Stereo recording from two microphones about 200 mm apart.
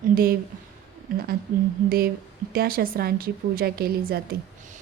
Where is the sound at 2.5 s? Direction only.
50° right (ahead or behind).